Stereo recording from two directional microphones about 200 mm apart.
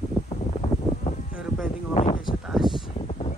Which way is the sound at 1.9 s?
30° left (ahead or behind).